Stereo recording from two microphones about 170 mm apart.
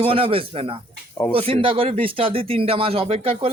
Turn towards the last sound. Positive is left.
turn(degrees=-35)  # may be behind; listen again after turning